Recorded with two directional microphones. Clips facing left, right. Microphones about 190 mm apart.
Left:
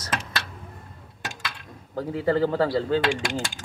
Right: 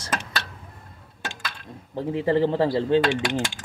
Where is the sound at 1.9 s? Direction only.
20° right (ahead or behind).